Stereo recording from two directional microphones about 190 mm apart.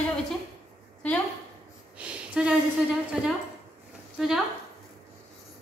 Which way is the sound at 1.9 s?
5° right (ahead or behind).